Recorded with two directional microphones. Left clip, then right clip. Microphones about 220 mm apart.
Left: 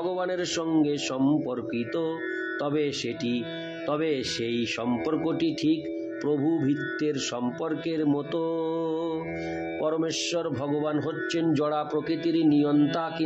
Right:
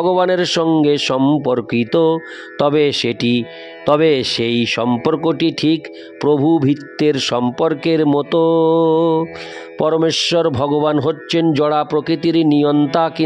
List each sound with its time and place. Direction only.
0.0 s speech: 50° right (ahead or behind)